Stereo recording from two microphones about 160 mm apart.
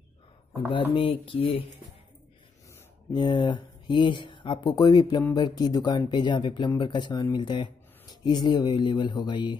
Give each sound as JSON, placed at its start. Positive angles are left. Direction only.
{"t": 0.7, "sound": "speech", "side_deg": 30}
{"t": 3.1, "sound": "speech", "side_deg": 30}